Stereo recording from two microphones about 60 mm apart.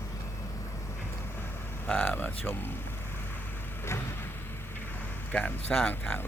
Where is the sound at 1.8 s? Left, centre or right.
Left.